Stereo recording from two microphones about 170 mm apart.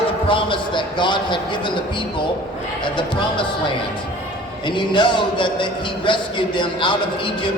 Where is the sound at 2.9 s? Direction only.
30° left (ahead or behind).